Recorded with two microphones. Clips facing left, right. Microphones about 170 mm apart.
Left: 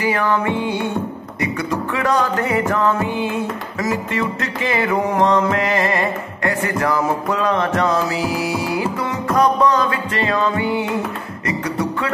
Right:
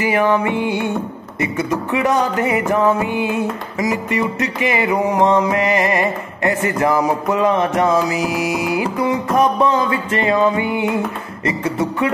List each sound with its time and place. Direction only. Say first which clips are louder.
0.0 s music: right 3 dB; 20° right (ahead or behind)